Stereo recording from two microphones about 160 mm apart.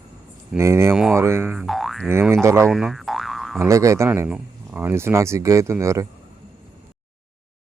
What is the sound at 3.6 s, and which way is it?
Speech, 20° right (ahead or behind).